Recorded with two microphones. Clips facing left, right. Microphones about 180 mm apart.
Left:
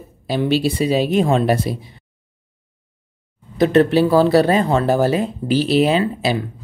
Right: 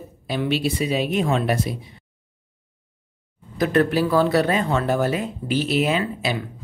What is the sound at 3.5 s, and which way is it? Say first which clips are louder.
Speech: left 5 dB; 25° left (ahead or behind).